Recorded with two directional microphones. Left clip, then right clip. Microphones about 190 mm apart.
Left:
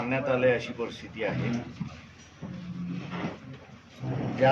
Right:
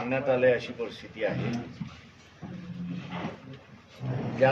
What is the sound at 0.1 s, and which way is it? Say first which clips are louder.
Speech: right 1 dB; 15° left (ahead or behind).